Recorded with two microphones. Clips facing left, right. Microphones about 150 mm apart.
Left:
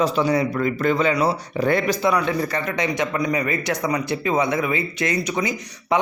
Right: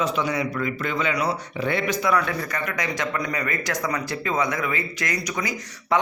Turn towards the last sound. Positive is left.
turn(degrees=25)  # may be behind; listen again after turning